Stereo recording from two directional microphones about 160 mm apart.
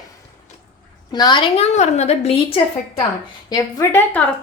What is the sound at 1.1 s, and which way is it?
Speech, 25° left (ahead or behind).